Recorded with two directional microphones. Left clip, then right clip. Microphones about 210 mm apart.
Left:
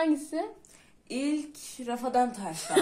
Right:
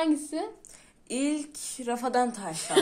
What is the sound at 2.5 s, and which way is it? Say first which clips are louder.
Speech: right 1 dB; 10° right (ahead or behind).